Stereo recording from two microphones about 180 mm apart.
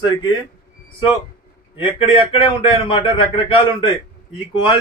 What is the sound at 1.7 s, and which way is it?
Speech, 30° left (ahead or behind).